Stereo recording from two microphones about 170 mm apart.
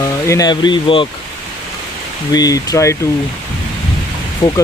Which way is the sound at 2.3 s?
20° left (ahead or behind).